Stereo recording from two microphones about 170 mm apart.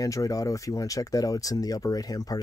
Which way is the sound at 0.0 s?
20° left (ahead or behind).